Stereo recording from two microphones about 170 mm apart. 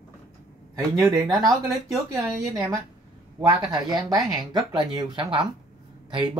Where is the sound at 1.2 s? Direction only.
20° right (ahead or behind).